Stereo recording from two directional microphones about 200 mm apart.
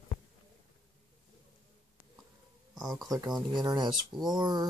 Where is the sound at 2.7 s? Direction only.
Centre (ahead or behind).